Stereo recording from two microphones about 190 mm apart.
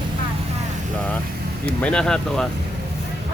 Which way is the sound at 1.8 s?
5° left (ahead or behind).